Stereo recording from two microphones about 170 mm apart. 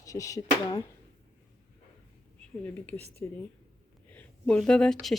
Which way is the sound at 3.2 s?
15° left (ahead or behind).